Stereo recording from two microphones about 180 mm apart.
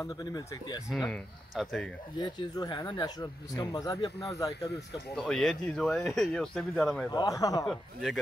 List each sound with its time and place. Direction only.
0.0 s speech: 20° left (ahead or behind)
0.8 s speech: centre (ahead or behind)
2.1 s speech: 25° left (ahead or behind)
5.1 s speech: centre (ahead or behind)
7.1 s speech: 20° left (ahead or behind)
7.6 s speech: centre (ahead or behind)